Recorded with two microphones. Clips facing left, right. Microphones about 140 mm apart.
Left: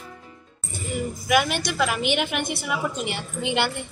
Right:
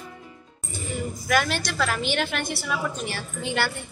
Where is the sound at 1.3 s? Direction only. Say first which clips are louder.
Left 2 dB; 15° left (ahead or behind).